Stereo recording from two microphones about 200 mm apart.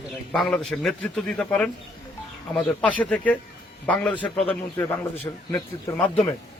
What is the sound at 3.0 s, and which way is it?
Speech, 5° left (ahead or behind).